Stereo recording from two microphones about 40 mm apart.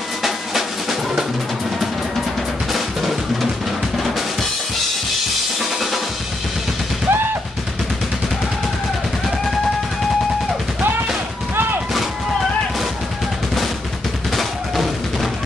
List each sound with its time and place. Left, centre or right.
0.2 s drum: centre
2.7 s drum: centre
7.1 s machine gun: right
14.3 s music: centre